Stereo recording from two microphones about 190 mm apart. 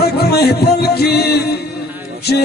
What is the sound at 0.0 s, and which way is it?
Music, 55° left (ahead or behind).